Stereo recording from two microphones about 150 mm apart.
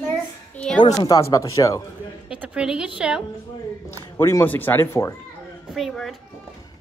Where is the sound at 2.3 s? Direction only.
5° right (ahead or behind).